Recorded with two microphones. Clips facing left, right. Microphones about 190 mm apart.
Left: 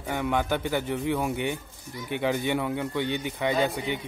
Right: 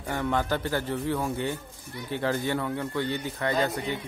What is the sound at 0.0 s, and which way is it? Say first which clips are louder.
Speech: left 1 dB; 10° left (ahead or behind).